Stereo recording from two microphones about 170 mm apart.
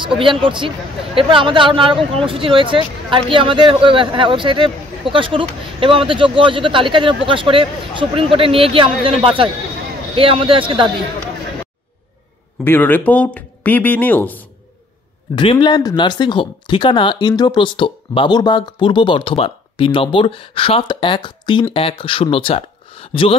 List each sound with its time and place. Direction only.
0.0 s speech: 30° right (ahead or behind)
12.6 s speech: 10° left (ahead or behind)
15.3 s speech: 30° left (ahead or behind)